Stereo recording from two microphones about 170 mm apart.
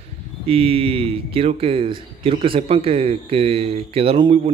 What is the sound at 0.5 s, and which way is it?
Speech, 35° right (ahead or behind).